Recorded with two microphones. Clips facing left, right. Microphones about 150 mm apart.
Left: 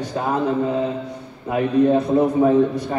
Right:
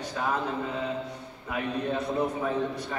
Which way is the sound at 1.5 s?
35° left (ahead or behind).